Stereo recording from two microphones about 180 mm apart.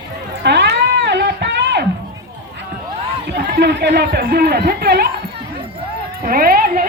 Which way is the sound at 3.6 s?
70° right (ahead or behind).